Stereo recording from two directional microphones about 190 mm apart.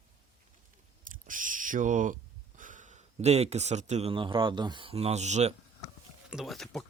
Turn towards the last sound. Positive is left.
turn(degrees=0)  # may be behind; listen again after turning